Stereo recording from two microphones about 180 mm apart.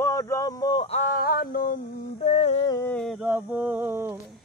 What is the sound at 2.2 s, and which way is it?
Humming, 35° left (ahead or behind).